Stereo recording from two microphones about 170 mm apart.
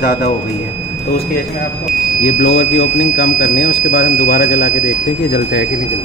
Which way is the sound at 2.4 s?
85° left.